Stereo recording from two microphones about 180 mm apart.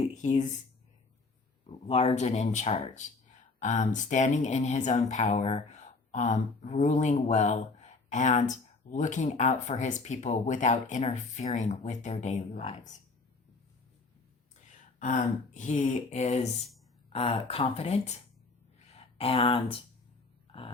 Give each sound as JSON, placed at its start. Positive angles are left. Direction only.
{"t": 0.0, "sound": "a sound", "side_deg": 40}
{"t": 1.9, "sound": "speech", "side_deg": 35}
{"t": 14.9, "sound": "speech", "side_deg": 45}